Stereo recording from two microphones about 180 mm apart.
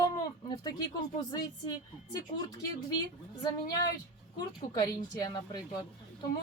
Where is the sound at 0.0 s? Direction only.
20° left (ahead or behind).